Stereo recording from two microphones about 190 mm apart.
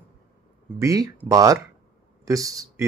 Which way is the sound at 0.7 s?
20° right (ahead or behind).